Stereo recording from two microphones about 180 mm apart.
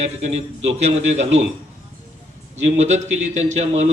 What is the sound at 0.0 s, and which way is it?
A man's voice, 40° right (ahead or behind).